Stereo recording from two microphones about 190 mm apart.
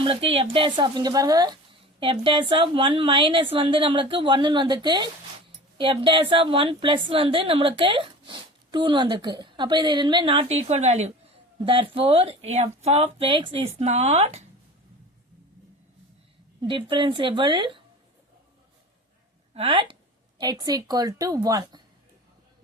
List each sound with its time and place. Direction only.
0.0 s a woman's voice: 30° right (ahead or behind)
16.6 s a woman's voice: 25° right (ahead or behind)
19.5 s a woman's voice: 25° right (ahead or behind)